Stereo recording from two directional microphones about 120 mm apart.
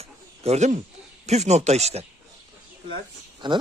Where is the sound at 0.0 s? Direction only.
60° right (ahead or behind).